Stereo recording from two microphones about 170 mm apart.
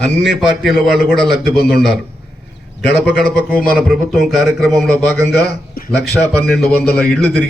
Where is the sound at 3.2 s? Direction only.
65° left (ahead or behind).